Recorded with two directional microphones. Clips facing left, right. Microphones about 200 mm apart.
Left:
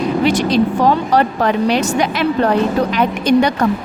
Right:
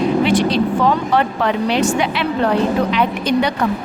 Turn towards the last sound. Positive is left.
turn(degrees=45)  # may be behind; listen again after turning